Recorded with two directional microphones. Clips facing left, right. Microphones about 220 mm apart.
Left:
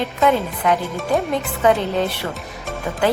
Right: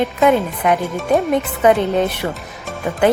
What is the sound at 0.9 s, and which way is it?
Speech, centre (ahead or behind).